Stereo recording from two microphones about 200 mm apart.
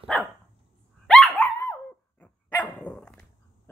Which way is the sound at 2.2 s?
5° left (ahead or behind).